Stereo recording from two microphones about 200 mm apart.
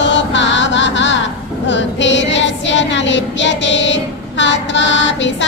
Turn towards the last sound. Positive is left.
turn(degrees=65)  # may be behind; listen again after turning